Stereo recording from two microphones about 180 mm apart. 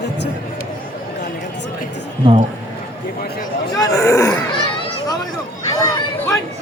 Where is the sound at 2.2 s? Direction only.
30° right (ahead or behind).